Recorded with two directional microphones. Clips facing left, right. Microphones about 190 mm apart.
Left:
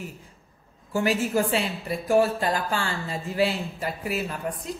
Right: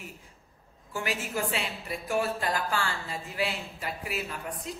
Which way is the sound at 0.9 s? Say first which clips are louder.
Left 9 dB; 35° left (ahead or behind).